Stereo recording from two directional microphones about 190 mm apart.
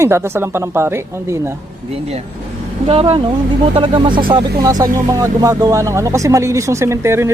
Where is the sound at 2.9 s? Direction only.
30° right (ahead or behind).